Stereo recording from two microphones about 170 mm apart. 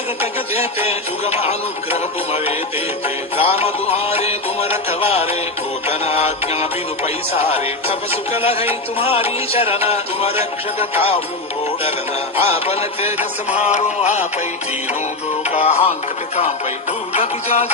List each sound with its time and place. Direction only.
0.2 s music: 35° left (ahead or behind)
12.4 s music: 35° left (ahead or behind)
15.4 s music: 40° left (ahead or behind)